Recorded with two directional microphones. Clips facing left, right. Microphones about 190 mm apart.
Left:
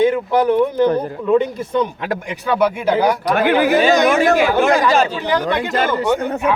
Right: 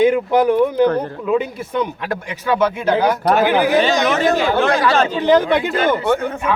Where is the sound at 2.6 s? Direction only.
10° left (ahead or behind).